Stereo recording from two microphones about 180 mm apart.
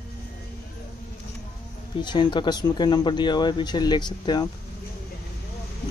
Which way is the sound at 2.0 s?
25° left (ahead or behind).